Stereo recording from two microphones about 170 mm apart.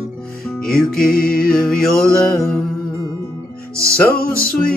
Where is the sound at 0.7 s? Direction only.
5° left (ahead or behind).